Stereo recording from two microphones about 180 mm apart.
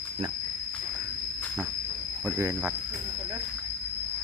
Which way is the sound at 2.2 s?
15° right (ahead or behind).